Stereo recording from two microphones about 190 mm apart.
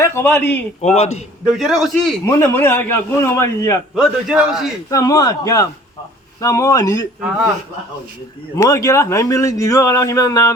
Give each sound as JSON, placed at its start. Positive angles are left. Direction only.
{"t": 0.0, "sound": "a man's voice", "side_deg": 10}
{"t": 0.9, "sound": "a man's voice", "side_deg": 35}
{"t": 1.5, "sound": "a man's voice", "side_deg": 0}
{"t": 2.2, "sound": "a man's voice", "side_deg": 15}
{"t": 3.9, "sound": "a man's voice", "side_deg": 0}
{"t": 4.9, "sound": "a man's voice", "side_deg": 15}
{"t": 7.2, "sound": "a man's voice", "side_deg": -5}
{"t": 8.5, "sound": "a man's voice", "side_deg": 15}